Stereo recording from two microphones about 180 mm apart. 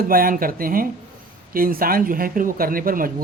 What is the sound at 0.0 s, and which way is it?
Speech, 55° right (ahead or behind).